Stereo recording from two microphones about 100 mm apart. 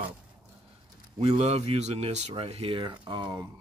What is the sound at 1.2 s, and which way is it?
Speech, 90° right.